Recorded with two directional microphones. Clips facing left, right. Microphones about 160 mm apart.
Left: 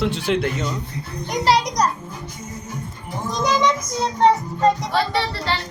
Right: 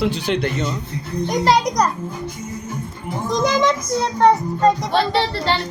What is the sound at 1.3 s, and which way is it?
Speech, 50° right (ahead or behind).